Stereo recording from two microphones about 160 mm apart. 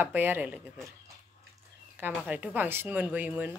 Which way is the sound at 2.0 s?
10° right (ahead or behind).